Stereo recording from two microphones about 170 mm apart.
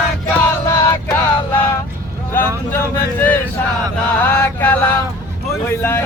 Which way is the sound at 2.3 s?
10° left (ahead or behind).